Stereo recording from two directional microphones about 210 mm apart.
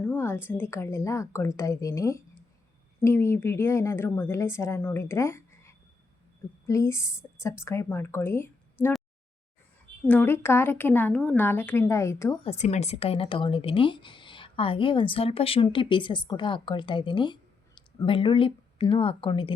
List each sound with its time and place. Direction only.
0.0 s a woman's voice: 10° left (ahead or behind)
10.1 s a woman's voice: 10° left (ahead or behind)
12.5 s speech: 35° left (ahead or behind)